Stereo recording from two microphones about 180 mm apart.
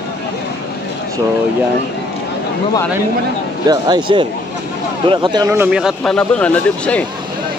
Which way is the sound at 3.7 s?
25° right (ahead or behind).